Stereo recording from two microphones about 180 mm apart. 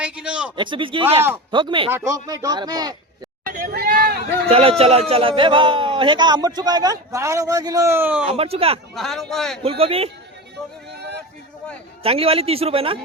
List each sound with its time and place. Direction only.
0.0 s a sound: 5° right (ahead or behind)
0.5 s a man's voice: 25° right (ahead or behind)
1.9 s a man's voice: 15° right (ahead or behind)
3.5 s a sound: 55° right (ahead or behind)
4.4 s a man's voice: 35° right (ahead or behind); by 8.2 s 10° right (ahead or behind)
8.2 s a man's voice: 35° right (ahead or behind)
9.0 s a man's voice: centre (ahead or behind)
9.6 s a man's voice: 35° right (ahead or behind)
12.0 s a man's voice: 30° right (ahead or behind)